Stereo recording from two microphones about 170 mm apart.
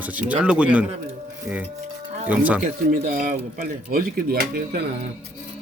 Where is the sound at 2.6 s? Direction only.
50° right (ahead or behind).